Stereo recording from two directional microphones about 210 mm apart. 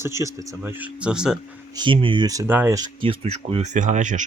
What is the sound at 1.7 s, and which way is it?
Speech, 25° right (ahead or behind).